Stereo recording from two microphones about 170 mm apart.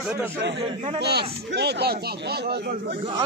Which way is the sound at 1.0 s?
75° right (ahead or behind).